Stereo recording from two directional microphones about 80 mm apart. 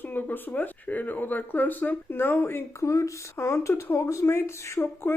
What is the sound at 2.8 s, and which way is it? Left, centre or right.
Speech, left.